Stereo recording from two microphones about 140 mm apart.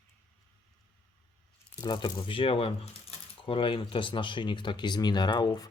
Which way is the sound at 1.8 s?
35° left (ahead or behind).